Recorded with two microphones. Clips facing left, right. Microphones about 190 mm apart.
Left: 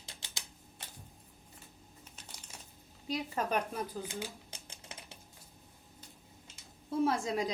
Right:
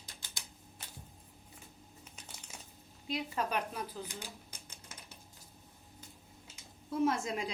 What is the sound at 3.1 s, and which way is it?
Speech, 45° left (ahead or behind).